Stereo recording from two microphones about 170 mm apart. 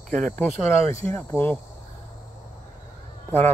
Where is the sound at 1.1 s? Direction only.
15° left (ahead or behind).